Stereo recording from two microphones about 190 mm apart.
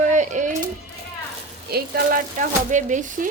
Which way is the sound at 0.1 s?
40° right (ahead or behind).